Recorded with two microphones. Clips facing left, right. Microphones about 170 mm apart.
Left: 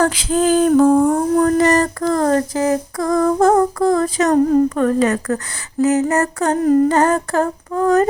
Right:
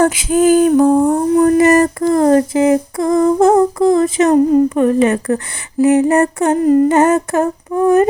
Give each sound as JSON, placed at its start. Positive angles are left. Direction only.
{"t": 0.0, "sound": "speech", "side_deg": -15}
{"t": 2.0, "sound": "humming", "side_deg": -20}
{"t": 4.3, "sound": "speech", "side_deg": -5}
{"t": 6.1, "sound": "humming", "side_deg": -30}
{"t": 6.5, "sound": "humming", "side_deg": -5}
{"t": 6.8, "sound": "humming", "side_deg": -25}